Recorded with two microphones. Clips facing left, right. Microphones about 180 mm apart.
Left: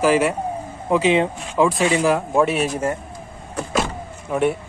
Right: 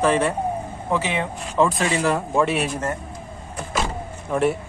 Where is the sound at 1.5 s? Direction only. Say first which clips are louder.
Left 2 dB; 5° left (ahead or behind).